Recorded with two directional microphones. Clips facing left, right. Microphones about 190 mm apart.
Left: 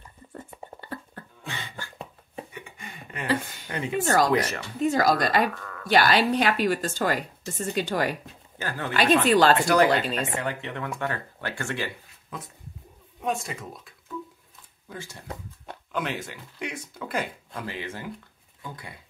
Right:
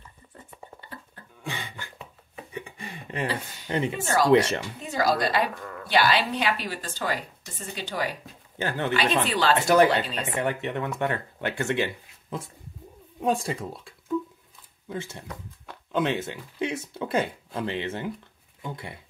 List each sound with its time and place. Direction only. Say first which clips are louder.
0.3 s a sound: left 5 dB; 50° left (ahead or behind)
1.4 s beatboxing: right 2 dB; 15° right (ahead or behind)
2.5 s a sound: right 5 dB; 35° right (ahead or behind)
4.3 s speech: right 5 dB; 30° right (ahead or behind)
4.8 s a woman's voice: left 3 dB; 50° left (ahead or behind)
8.5 s speech: right 4 dB; 25° right (ahead or behind)
8.9 s a woman's voice: left 7 dB; 45° left (ahead or behind)
10.4 s speech: right 4 dB; 20° right (ahead or behind)